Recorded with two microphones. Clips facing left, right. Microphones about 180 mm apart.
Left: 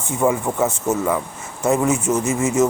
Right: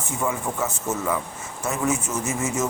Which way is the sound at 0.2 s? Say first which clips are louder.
Left 8 dB; 35° left (ahead or behind).